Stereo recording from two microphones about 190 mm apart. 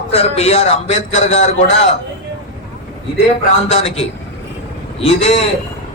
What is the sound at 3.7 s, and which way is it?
Speech, 35° left (ahead or behind).